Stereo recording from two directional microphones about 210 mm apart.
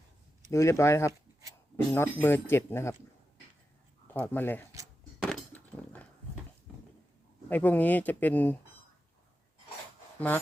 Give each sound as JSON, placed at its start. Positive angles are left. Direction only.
{"t": 0.5, "sound": "speech", "side_deg": 15}
{"t": 4.1, "sound": "speech", "side_deg": 10}
{"t": 5.2, "sound": "a sound", "side_deg": 5}
{"t": 7.5, "sound": "speech", "side_deg": 10}
{"t": 10.2, "sound": "speech", "side_deg": 10}